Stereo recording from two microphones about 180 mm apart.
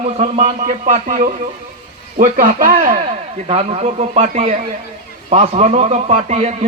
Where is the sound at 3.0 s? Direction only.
35° right (ahead or behind).